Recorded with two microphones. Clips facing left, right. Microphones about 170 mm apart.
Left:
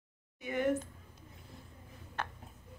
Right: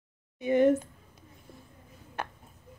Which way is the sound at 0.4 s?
25° right (ahead or behind).